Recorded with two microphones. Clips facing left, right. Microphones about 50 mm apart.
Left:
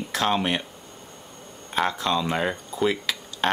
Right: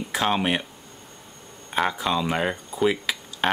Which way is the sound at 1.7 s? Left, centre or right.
Centre.